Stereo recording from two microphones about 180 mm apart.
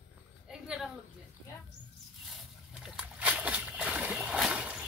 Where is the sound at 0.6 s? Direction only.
5° right (ahead or behind).